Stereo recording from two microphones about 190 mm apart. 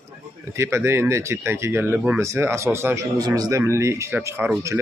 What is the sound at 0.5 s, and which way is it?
Speech, 15° right (ahead or behind).